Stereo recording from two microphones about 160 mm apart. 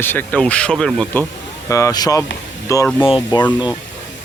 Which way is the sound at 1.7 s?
20° left (ahead or behind).